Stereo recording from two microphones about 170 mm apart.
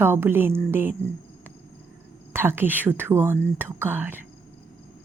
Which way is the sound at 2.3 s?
15° right (ahead or behind).